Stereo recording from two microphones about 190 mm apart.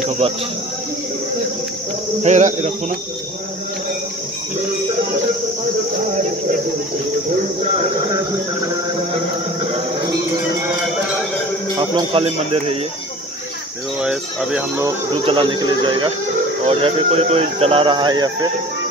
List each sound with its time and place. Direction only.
2.2 s speech: 40° right (ahead or behind)
11.8 s speech: 25° right (ahead or behind)
13.9 s speech: 5° right (ahead or behind)
15.2 s speech: 25° right (ahead or behind)